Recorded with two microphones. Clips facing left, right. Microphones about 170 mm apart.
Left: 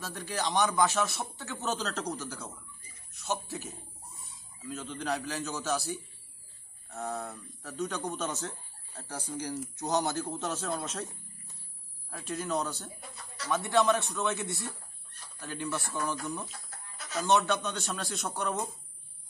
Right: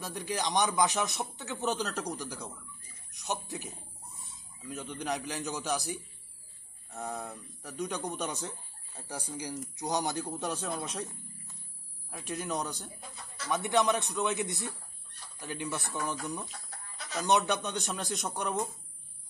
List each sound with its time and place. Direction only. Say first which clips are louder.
0.0 s speech: even; 15° right (ahead or behind)
12.1 s speech: left 2 dB; 20° right (ahead or behind)
16.4 s chicken: even; centre (ahead or behind)
17.2 s speech: left 1 dB; 15° right (ahead or behind)